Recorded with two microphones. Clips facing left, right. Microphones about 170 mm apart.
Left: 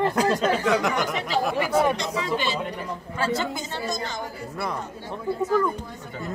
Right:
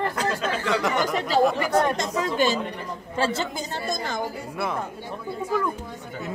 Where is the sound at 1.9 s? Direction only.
45° right (ahead or behind).